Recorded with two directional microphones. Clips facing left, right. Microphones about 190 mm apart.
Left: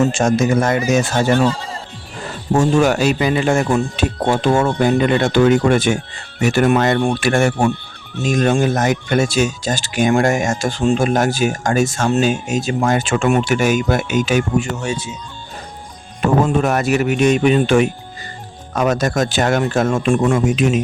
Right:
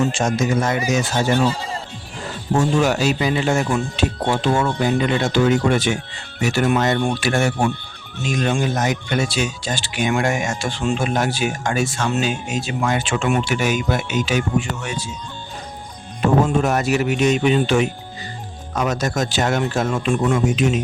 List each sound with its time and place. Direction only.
0.0 s speech: 45° left (ahead or behind)
2.6 s speech: 50° left (ahead or behind)
14.8 s speech: 25° left (ahead or behind)
16.6 s speech: 55° left (ahead or behind)